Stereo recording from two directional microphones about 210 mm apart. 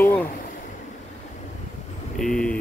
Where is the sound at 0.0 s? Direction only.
10° left (ahead or behind).